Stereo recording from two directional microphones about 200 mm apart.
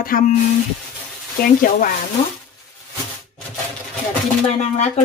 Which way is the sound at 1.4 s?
45° left (ahead or behind).